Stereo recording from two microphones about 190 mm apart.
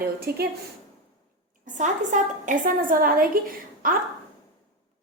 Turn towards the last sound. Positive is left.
turn(degrees=-50)  # may be behind; listen again after turning